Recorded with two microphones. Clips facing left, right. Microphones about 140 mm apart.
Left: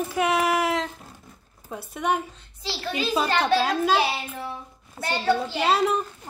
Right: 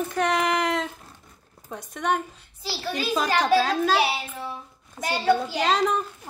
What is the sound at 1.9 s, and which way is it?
Speech, 10° left (ahead or behind).